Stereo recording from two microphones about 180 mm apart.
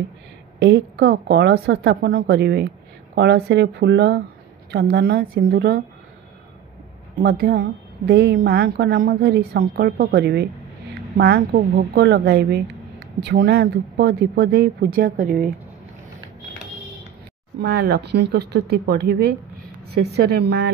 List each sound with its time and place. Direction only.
0.6 s a woman's voice: 70° right (ahead or behind)
7.2 s a woman's voice: 60° right (ahead or behind)
17.6 s a woman's voice: 60° right (ahead or behind)